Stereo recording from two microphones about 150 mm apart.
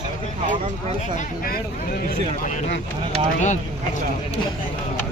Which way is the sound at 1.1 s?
85° left.